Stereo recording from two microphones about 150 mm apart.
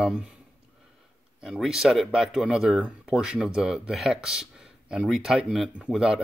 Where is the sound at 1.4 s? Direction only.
5° right (ahead or behind).